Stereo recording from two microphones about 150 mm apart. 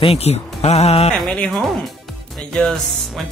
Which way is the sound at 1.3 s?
5° left (ahead or behind).